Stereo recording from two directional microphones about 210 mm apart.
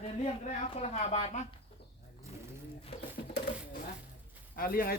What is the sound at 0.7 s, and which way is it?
Speech, 30° left (ahead or behind).